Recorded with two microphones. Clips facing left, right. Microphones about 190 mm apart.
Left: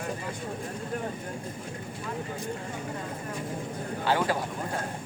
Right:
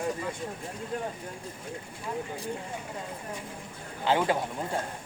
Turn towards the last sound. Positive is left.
turn(degrees=-20)  # may be behind; listen again after turning